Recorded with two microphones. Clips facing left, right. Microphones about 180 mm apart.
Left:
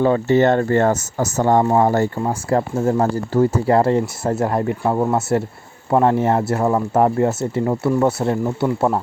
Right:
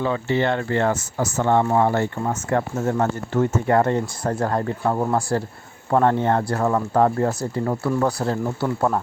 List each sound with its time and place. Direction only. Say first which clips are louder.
0.0 s speech: left 7 dB; 45° left (ahead or behind)
2.2 s speech: left 3 dB; 30° left (ahead or behind)